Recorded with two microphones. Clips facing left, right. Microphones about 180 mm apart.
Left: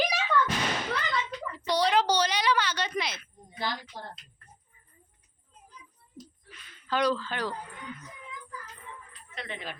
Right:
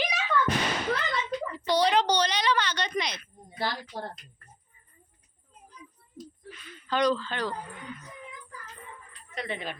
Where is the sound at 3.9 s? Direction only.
45° right (ahead or behind).